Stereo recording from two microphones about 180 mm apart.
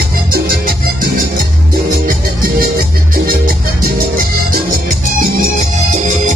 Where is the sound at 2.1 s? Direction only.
55° right (ahead or behind).